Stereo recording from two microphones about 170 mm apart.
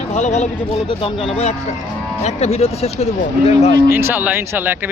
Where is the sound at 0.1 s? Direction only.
45° left (ahead or behind).